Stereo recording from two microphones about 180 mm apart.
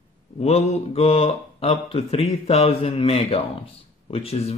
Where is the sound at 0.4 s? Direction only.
35° left (ahead or behind).